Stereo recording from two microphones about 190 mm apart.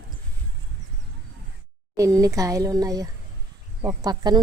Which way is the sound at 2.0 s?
15° right (ahead or behind).